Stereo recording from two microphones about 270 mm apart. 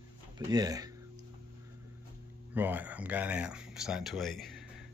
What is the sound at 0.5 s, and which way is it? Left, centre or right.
Speech, centre.